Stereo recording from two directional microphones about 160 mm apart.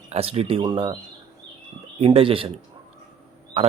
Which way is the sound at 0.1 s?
40° right (ahead or behind).